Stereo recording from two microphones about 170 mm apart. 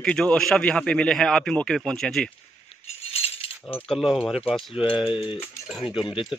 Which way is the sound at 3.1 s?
35° left (ahead or behind).